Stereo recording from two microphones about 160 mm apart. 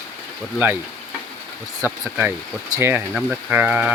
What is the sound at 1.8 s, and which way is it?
Speech, 15° right (ahead or behind).